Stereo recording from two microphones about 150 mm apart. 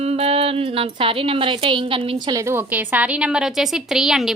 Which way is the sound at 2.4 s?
15° right (ahead or behind).